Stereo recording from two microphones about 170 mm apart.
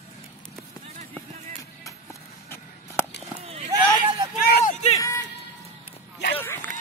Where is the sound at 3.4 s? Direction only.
35° right (ahead or behind).